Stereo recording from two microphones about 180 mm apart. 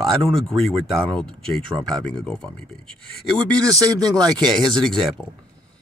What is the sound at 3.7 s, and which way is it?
Speech, 20° right (ahead or behind).